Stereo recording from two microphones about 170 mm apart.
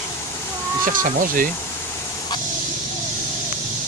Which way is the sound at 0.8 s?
55° right (ahead or behind).